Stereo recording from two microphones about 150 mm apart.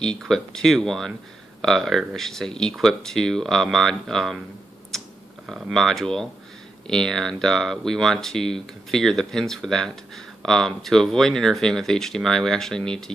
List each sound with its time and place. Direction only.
0.0 s speech: 5° left (ahead or behind)
5.5 s speech: centre (ahead or behind)